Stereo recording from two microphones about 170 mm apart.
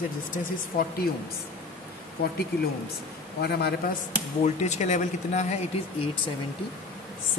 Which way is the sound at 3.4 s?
75° left (ahead or behind).